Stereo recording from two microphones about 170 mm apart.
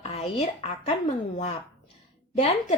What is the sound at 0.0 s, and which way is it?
Speech, 35° left (ahead or behind).